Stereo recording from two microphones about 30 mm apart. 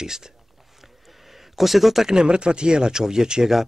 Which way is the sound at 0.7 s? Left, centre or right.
Centre.